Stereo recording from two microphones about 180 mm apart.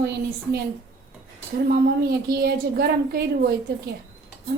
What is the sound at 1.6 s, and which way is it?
A woman's voice, 55° right (ahead or behind).